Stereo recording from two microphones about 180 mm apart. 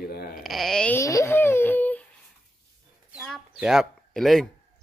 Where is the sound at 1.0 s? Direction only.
15° left (ahead or behind).